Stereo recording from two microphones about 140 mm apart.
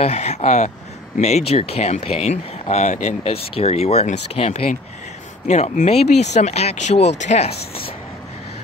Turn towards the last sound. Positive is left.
turn(degrees=50)  # may be behind; listen again after turning